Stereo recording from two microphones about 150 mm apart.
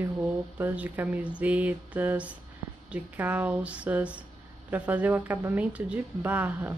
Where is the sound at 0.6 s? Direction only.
10° right (ahead or behind).